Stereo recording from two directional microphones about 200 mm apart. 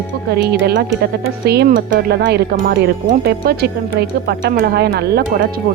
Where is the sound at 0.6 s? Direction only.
55° right (ahead or behind).